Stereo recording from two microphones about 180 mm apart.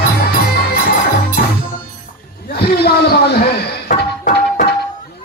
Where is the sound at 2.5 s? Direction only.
65° left (ahead or behind).